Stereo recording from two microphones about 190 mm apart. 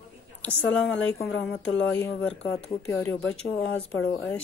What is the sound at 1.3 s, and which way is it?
Speech, 75° left (ahead or behind).